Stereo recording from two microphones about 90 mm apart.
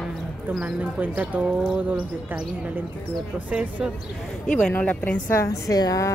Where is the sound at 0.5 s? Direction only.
15° right (ahead or behind).